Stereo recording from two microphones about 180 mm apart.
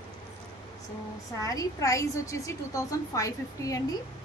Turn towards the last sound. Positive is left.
turn(degrees=20)  # may be behind; listen again after turning